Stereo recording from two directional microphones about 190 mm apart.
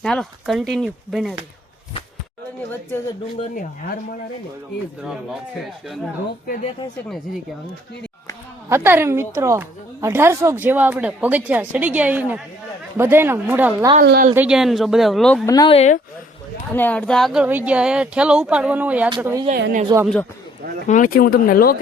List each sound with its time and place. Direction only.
0.0 s speech: centre (ahead or behind)
3.5 s speech: 50° left (ahead or behind)
6.5 s speech: 35° left (ahead or behind)
8.7 s a woman's voice: 15° right (ahead or behind)
14.0 s a woman's voice: 55° right (ahead or behind)
14.3 s speech: 5° right (ahead or behind)
15.4 s speech: 20° left (ahead or behind)
15.7 s speech: 35° left (ahead or behind)
16.7 s a woman's voice: 10° left (ahead or behind); by 20.1 s 20° right (ahead or behind)
20.8 s speech: 45° left (ahead or behind)